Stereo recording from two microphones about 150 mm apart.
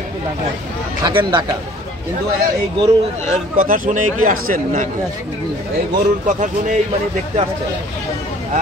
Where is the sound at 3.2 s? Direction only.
60° right (ahead or behind).